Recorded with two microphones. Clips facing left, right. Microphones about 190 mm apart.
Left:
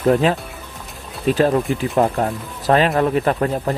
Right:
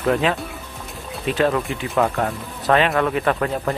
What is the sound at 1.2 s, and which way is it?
Speech, 35° left (ahead or behind).